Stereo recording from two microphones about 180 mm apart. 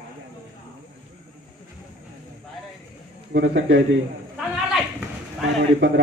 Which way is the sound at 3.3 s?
70° right (ahead or behind).